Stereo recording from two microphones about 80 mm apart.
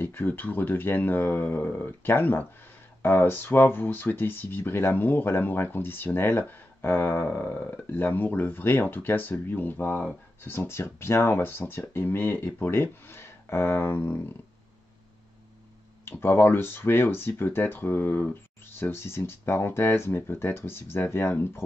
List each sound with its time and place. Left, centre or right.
0.0 s speech: left
16.1 s speech: left